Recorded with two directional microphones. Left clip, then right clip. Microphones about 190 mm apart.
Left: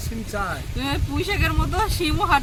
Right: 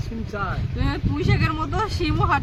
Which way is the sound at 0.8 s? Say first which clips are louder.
Left 1 dB; centre (ahead or behind).